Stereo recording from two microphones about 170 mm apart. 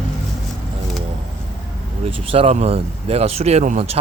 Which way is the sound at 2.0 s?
35° right (ahead or behind).